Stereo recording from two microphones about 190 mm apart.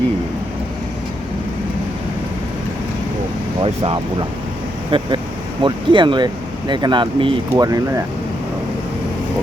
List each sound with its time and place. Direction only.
3.6 s speech: 25° right (ahead or behind)